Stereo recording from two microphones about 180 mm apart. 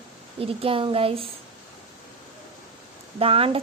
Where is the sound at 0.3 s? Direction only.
30° right (ahead or behind).